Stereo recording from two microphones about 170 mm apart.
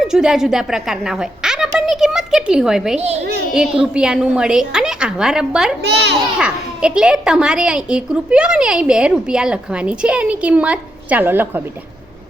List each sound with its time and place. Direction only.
0.0 s a woman's voice: 5° right (ahead or behind)
5.8 s a child's voice: 80° right
6.4 s a woman's voice: 5° right (ahead or behind)